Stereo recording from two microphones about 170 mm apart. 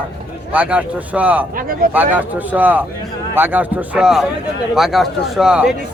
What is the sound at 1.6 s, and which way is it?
Speech, 55° right (ahead or behind).